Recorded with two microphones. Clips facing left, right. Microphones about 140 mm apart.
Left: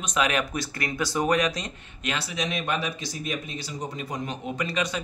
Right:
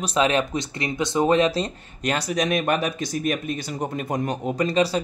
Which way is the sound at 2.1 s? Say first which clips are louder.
Right 7 dB; 45° right (ahead or behind).